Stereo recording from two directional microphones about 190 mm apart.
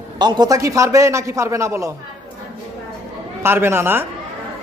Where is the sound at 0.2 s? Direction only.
20° right (ahead or behind).